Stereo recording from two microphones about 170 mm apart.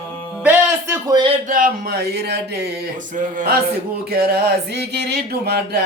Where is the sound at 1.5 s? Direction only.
55° right (ahead or behind); by 2.7 s 70° right (ahead or behind).